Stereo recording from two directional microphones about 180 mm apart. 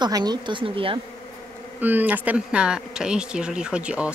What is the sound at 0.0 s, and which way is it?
Speech, 25° right (ahead or behind).